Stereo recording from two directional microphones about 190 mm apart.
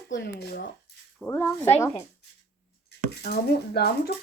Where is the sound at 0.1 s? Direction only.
60° left (ahead or behind).